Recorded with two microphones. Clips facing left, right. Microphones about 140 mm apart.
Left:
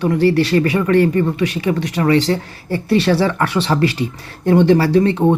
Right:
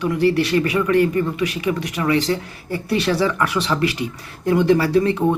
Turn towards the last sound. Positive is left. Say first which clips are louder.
# left 3 dB
turn(degrees=30)  # may be behind; listen again after turning